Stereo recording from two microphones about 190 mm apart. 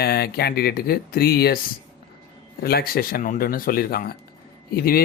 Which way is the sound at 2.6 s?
50° left (ahead or behind).